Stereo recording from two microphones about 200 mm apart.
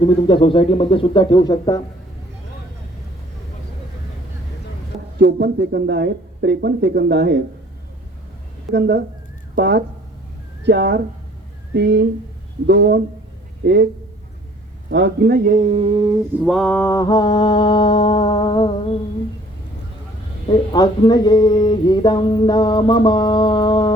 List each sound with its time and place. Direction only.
0.0 s music: 25° left (ahead or behind)
5.2 s speech: 55° right (ahead or behind)
8.7 s speech: 60° right (ahead or behind)
14.8 s a man's voice: 60° right (ahead or behind); by 16.2 s 20° right (ahead or behind)
16.4 s music: centre (ahead or behind); by 18.9 s 25° left (ahead or behind)
20.7 s music: 20° left (ahead or behind)